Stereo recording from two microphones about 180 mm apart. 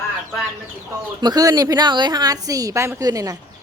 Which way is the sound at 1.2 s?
20° right (ahead or behind).